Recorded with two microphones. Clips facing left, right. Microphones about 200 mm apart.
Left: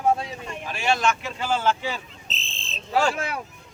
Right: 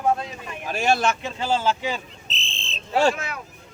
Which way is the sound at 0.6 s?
45° right (ahead or behind).